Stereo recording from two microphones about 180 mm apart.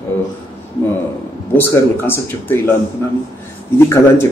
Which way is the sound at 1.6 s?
10° left (ahead or behind).